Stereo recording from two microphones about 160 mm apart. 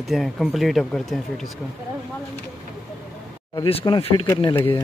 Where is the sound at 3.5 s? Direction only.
35° left (ahead or behind).